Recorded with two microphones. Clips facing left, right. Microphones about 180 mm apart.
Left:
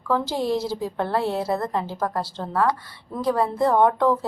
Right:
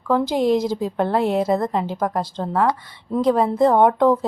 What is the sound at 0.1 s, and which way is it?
A woman's voice, 15° right (ahead or behind).